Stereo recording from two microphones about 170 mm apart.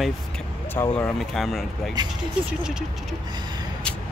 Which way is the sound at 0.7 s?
10° left (ahead or behind).